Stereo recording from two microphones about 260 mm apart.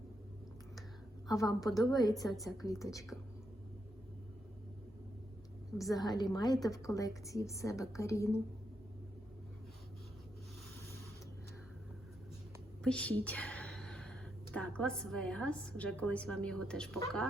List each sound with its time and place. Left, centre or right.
1.3 s a woman's voice: centre
5.8 s a woman's voice: centre
12.8 s speech: centre